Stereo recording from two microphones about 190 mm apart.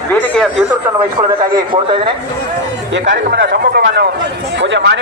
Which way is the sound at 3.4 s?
55° right (ahead or behind).